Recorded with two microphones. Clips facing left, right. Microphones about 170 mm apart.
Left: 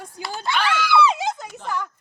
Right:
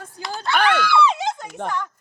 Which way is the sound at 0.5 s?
50° right (ahead or behind).